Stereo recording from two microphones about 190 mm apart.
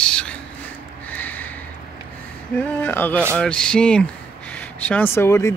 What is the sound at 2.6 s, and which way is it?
Speech, 10° left (ahead or behind).